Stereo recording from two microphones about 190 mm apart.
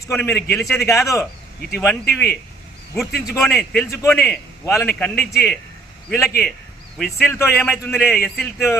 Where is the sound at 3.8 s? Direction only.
15° left (ahead or behind).